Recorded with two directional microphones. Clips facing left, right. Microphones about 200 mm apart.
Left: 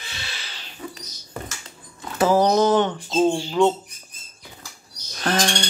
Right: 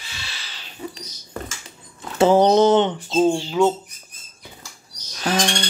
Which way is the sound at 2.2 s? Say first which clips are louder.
Right 3 dB; 25° right (ahead or behind).